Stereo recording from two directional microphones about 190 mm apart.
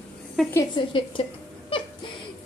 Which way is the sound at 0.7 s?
25° left (ahead or behind).